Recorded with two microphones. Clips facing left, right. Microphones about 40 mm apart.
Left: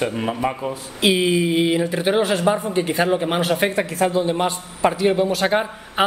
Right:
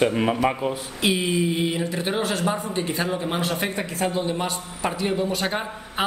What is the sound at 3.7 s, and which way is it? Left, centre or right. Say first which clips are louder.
A man's voice: left 6 dB; left.